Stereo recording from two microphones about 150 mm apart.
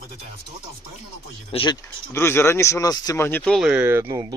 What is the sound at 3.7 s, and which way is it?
Speech, 10° right (ahead or behind).